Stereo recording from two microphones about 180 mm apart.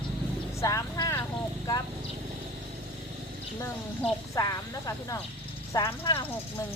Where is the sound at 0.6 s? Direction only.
20° left (ahead or behind).